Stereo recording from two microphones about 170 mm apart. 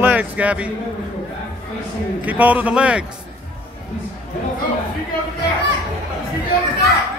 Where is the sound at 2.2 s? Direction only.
10° right (ahead or behind).